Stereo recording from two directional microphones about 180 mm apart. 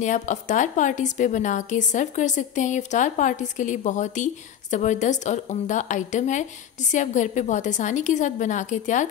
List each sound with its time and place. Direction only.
0.0 s a woman's voice: 45° left (ahead or behind)